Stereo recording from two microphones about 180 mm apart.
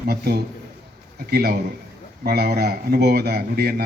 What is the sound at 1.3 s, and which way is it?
A man's voice, 60° right (ahead or behind).